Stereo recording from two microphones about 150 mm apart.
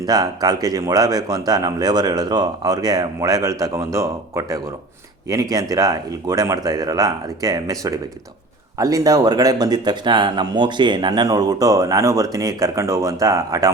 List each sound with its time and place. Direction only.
0.0 s speech: 25° right (ahead or behind)